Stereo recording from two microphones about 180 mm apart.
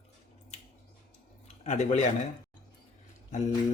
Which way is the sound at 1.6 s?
40° left (ahead or behind).